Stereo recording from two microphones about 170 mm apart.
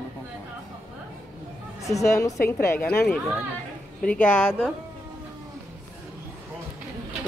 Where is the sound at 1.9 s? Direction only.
20° left (ahead or behind).